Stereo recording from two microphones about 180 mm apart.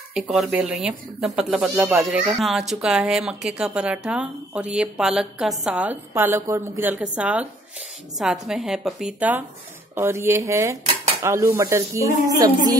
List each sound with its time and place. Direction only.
0.1 s speech: 5° right (ahead or behind)